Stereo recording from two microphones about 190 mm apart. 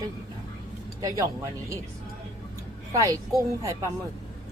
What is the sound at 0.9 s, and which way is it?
Speech, 15° right (ahead or behind).